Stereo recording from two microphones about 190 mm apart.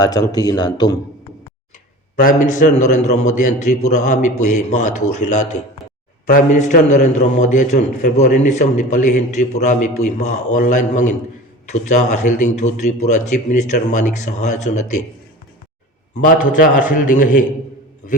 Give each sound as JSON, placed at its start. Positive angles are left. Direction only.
{"t": 0.0, "sound": "speech", "side_deg": 20}
{"t": 2.2, "sound": "a man's voice", "side_deg": 40}
{"t": 16.1, "sound": "a man's voice", "side_deg": 45}